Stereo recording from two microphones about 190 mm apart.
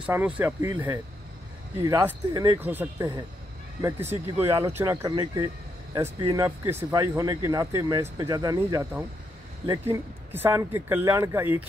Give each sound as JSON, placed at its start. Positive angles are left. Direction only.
{"t": 0.0, "sound": "speech", "side_deg": -10}
{"t": 4.4, "sound": "speech", "side_deg": -15}